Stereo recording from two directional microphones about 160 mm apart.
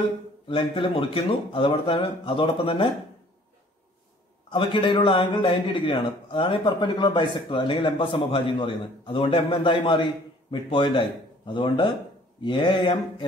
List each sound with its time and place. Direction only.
0.5 s a man's voice: 30° left (ahead or behind)
4.5 s a man's voice: 30° left (ahead or behind)